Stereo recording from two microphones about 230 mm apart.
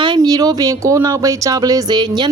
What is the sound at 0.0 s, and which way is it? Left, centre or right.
Speech, centre.